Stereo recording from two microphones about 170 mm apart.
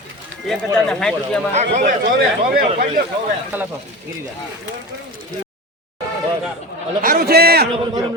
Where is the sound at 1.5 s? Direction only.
45° right (ahead or behind).